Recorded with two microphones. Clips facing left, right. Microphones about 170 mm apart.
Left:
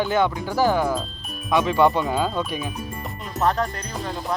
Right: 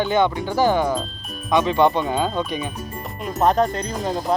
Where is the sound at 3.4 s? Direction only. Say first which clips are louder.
Right 5 dB; 20° right (ahead or behind).